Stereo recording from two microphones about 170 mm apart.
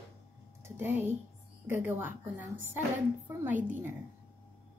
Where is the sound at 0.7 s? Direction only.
15° right (ahead or behind).